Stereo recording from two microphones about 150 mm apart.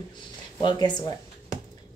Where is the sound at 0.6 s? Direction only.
30° left (ahead or behind).